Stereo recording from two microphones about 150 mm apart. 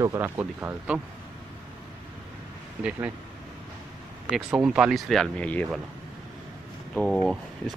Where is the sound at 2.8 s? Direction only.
10° right (ahead or behind).